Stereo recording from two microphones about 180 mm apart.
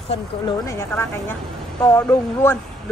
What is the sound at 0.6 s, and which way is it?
Speech, 15° left (ahead or behind).